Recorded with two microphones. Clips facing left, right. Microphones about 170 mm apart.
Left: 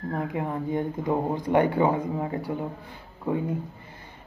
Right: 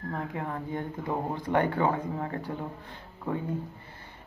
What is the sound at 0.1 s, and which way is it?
Speech, 15° left (ahead or behind).